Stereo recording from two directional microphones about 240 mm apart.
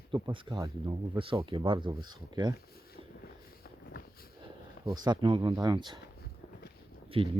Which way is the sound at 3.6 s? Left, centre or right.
Left.